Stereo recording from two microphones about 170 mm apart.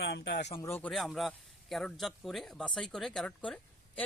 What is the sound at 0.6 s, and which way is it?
Speech, 15° left (ahead or behind).